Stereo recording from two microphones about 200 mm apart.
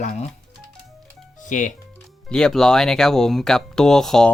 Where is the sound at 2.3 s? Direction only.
5° left (ahead or behind).